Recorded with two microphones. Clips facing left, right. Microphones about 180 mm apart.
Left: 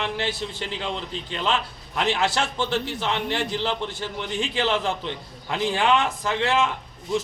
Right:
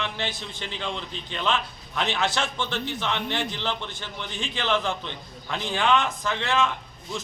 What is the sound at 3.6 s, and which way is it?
Speech, 35° left (ahead or behind).